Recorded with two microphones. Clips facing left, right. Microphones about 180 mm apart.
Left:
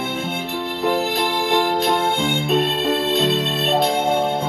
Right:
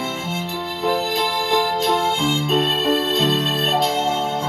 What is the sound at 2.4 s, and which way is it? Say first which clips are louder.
Music: left 1 dB; 60° left (ahead or behind).